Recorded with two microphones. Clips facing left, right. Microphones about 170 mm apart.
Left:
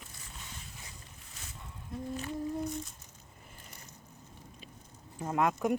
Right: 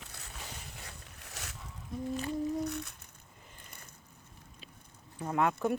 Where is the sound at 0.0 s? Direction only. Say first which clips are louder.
Right 2 dB; 70° right (ahead or behind).